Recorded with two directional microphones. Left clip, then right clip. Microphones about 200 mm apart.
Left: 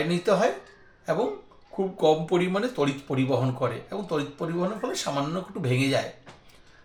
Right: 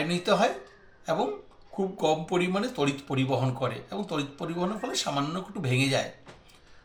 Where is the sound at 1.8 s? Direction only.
45° left (ahead or behind).